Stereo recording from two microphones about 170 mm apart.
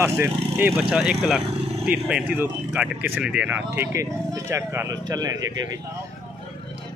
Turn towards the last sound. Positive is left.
turn(degrees=-20)  # may be behind; listen again after turning